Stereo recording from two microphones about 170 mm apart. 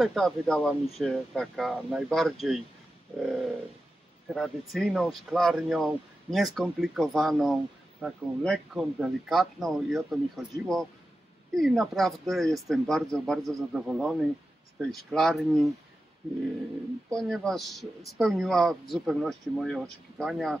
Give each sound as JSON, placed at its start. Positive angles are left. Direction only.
{"t": 0.0, "sound": "speech", "side_deg": 0}
{"t": 17.1, "sound": "speech", "side_deg": 5}